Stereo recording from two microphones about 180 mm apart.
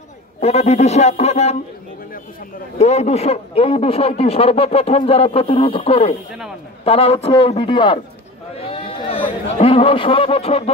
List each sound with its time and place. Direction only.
0.4 s a man's voice: 35° left (ahead or behind)
2.8 s a man's voice: 35° left (ahead or behind)
8.5 s chatter: 30° left (ahead or behind)